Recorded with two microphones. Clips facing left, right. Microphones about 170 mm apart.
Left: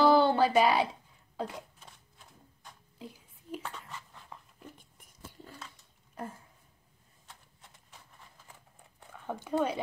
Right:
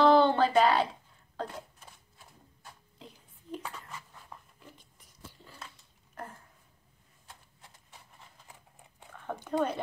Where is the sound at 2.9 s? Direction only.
5° left (ahead or behind).